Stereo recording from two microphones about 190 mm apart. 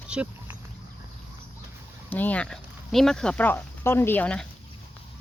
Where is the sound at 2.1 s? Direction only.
10° left (ahead or behind).